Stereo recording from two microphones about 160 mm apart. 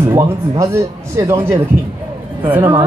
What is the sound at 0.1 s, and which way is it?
Speech, 20° right (ahead or behind).